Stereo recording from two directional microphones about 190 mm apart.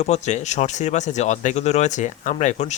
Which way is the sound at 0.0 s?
35° left (ahead or behind).